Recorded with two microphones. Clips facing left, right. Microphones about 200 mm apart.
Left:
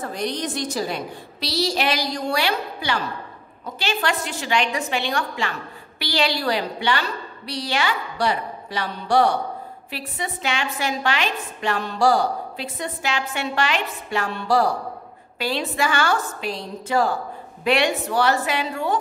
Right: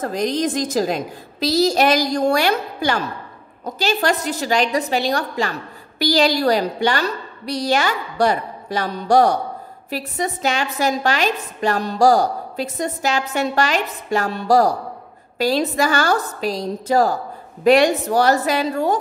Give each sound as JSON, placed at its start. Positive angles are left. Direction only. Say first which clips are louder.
{"t": 0.1, "sound": "a woman's voice", "louder": "right 6 dB", "side_deg": -90}
{"t": 1.7, "sound": "a woman's voice", "louder": "right 7 dB", "side_deg": -45}